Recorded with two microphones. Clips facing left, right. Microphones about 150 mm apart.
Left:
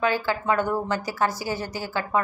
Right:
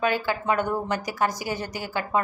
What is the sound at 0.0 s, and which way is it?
Speech, 20° right (ahead or behind).